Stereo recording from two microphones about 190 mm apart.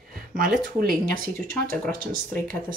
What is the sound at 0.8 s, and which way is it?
Speech, 50° right (ahead or behind).